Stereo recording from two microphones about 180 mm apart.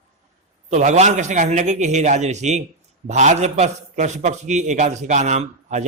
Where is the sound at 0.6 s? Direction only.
40° right (ahead or behind).